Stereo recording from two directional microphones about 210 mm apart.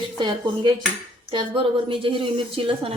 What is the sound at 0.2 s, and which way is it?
A woman's voice, 20° right (ahead or behind).